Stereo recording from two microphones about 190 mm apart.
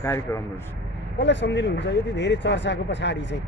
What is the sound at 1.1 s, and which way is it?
Speech, 65° left (ahead or behind).